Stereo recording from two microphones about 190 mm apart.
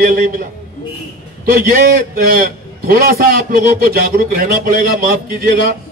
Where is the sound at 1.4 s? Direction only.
50° right (ahead or behind).